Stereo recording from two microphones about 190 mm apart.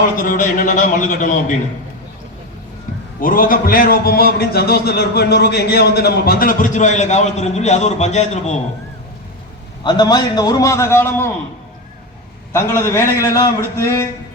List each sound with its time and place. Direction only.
0.2 s a man's voice: 45° left (ahead or behind)
3.2 s a man's voice: 45° left (ahead or behind)
9.8 s a man's voice: 20° left (ahead or behind)
12.5 s a man's voice: 15° left (ahead or behind)